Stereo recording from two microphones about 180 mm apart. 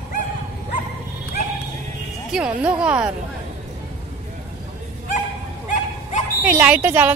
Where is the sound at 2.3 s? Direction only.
5° right (ahead or behind).